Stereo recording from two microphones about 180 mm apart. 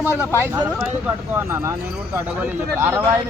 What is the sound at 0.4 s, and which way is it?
A man's voice, 20° right (ahead or behind).